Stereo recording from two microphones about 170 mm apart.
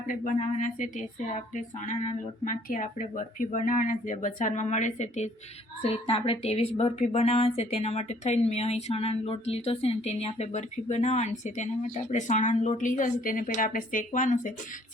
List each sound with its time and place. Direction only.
0.1 s speech: 45° left (ahead or behind)
5.8 s a woman's voice: 30° left (ahead or behind); by 14.5 s 50° left (ahead or behind)